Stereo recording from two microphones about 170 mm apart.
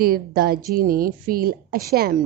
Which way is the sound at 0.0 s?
60° right (ahead or behind).